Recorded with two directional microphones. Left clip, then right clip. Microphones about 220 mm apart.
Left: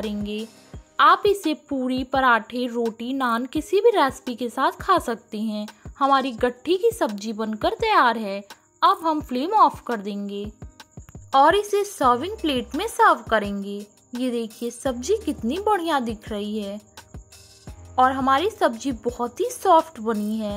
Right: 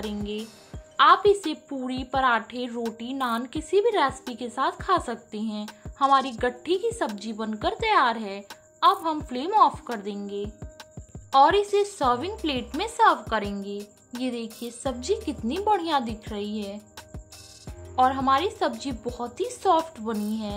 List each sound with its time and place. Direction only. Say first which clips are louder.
0.1 s a woman's voice: left 2 dB; 25° left (ahead or behind)
17.9 s a woman's voice: left 3 dB; 20° left (ahead or behind)